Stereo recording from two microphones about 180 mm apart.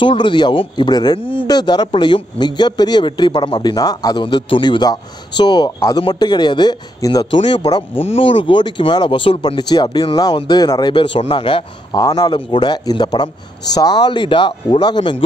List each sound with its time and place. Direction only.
0.0 s speech: 25° left (ahead or behind)
7.6 s speech: 30° left (ahead or behind)